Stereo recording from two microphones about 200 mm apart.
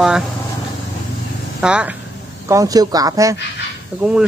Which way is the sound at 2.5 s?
15° right (ahead or behind).